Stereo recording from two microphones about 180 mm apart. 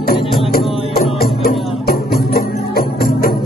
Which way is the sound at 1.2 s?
60° left (ahead or behind).